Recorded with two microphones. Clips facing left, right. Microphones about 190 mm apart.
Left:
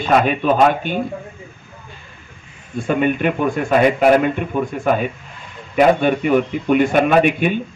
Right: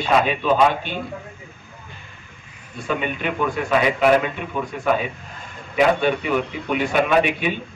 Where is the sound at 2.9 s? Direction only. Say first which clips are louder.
Left 7 dB; 50° left (ahead or behind).